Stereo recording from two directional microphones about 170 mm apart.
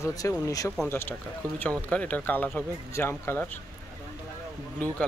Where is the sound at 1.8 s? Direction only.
10° left (ahead or behind).